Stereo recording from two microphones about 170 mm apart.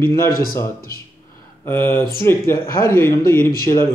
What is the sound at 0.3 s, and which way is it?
Speech, 60° left (ahead or behind).